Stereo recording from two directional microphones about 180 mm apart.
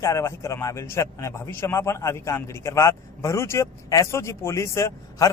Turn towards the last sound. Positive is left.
turn(degrees=20)  # may be behind; listen again after turning